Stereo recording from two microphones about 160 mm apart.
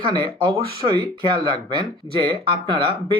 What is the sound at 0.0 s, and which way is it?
Speech, 30° right (ahead or behind).